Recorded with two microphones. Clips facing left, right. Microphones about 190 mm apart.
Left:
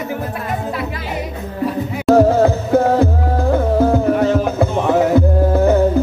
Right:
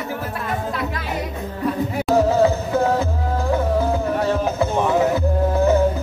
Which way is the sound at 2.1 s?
55° left (ahead or behind).